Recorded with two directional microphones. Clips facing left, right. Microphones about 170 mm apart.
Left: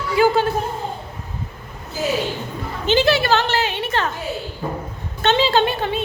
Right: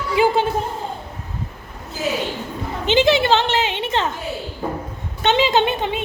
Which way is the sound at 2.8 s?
20° right (ahead or behind).